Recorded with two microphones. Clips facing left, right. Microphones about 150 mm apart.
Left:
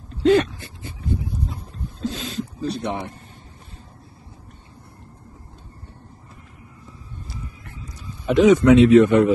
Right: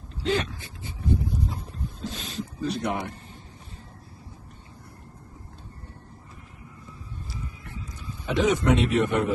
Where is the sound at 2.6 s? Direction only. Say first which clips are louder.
Left 1 dB; 30° left (ahead or behind).